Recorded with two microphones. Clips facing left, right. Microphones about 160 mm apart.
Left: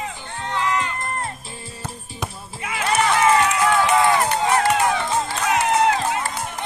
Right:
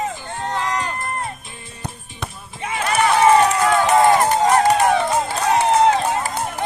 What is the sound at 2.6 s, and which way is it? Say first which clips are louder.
Run: right 2 dB; 30° right (ahead or behind).